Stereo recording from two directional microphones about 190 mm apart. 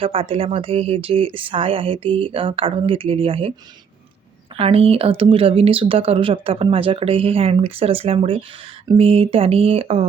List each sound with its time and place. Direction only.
0.0 s speech: 30° right (ahead or behind)
4.5 s speech: 30° right (ahead or behind)